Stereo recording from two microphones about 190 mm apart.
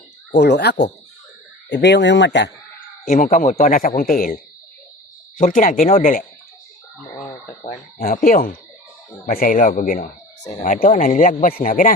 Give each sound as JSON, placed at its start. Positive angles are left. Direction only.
{"t": 0.3, "sound": "speech", "side_deg": 60}
{"t": 3.1, "sound": "speech", "side_deg": 40}
{"t": 5.4, "sound": "speech", "side_deg": 45}
{"t": 7.9, "sound": "speech", "side_deg": 45}